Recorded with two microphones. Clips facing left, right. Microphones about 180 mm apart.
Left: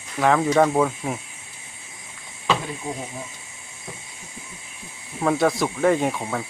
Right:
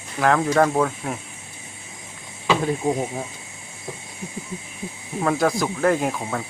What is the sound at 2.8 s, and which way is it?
Speech, 70° right (ahead or behind).